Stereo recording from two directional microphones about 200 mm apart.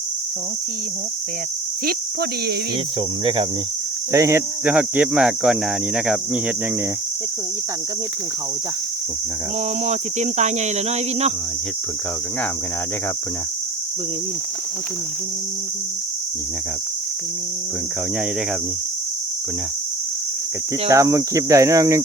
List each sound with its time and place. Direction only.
4.1 s speech: 15° right (ahead or behind)
9.8 s speech: 35° right (ahead or behind)
20.8 s speech: 15° right (ahead or behind)